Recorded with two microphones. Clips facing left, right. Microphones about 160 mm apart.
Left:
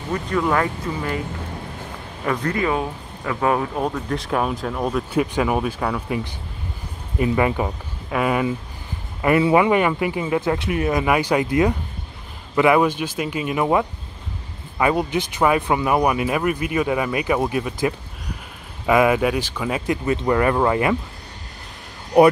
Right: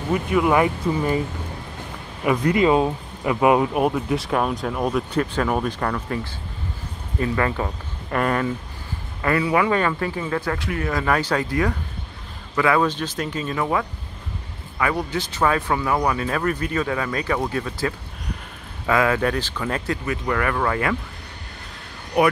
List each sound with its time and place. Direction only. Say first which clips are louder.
0.1 s speech: right 2 dB; 10° right (ahead or behind)
2.2 s speech: right 4 dB; 15° right (ahead or behind); by 5.0 s centre (ahead or behind)
5.1 s speech: left 2 dB; 10° left (ahead or behind)
9.2 s speech: left 4 dB; 20° left (ahead or behind)
20.1 s speech: left 6 dB; 25° left (ahead or behind)